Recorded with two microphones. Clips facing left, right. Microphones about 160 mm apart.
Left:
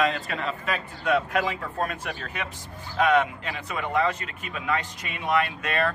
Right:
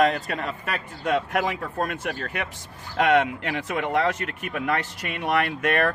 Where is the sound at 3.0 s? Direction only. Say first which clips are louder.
Right 2 dB; 75° right (ahead or behind).